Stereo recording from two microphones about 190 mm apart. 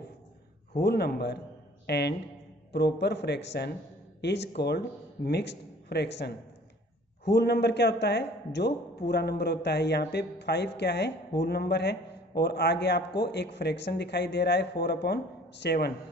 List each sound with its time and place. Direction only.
0.7 s a man's voice: 55° left (ahead or behind)